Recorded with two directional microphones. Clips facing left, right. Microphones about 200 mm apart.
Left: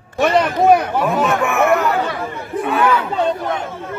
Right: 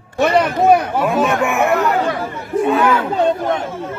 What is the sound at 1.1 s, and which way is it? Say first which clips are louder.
Speech: right 1 dB; 15° right (ahead or behind).